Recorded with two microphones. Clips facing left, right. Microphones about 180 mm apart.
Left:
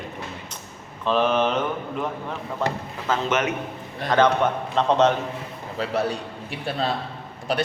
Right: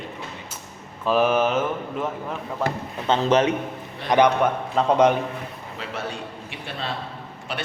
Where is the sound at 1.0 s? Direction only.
10° right (ahead or behind).